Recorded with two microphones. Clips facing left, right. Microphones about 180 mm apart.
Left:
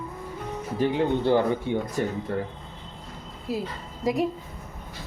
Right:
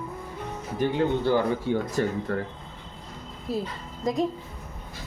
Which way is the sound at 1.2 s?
20° left (ahead or behind).